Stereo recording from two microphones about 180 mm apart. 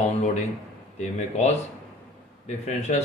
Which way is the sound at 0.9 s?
40° left (ahead or behind).